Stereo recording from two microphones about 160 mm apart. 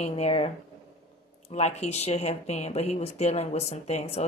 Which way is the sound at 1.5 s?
45° left (ahead or behind).